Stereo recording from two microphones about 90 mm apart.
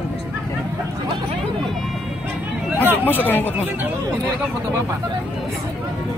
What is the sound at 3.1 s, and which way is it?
Speech, 20° left (ahead or behind).